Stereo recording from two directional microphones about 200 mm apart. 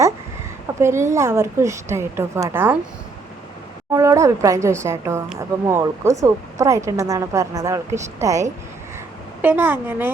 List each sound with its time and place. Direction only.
0.8 s a woman's voice: 15° right (ahead or behind)
3.9 s a woman's voice: 15° right (ahead or behind)